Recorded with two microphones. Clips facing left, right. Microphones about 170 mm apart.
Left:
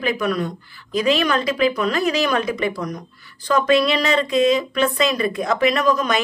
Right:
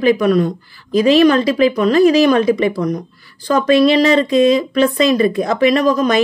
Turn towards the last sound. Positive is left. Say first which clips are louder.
# right 6 dB
turn(degrees=-35)  # may be behind; listen again after turning